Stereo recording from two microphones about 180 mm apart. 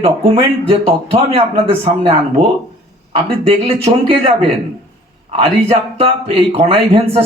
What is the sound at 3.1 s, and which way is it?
Speech, 30° right (ahead or behind).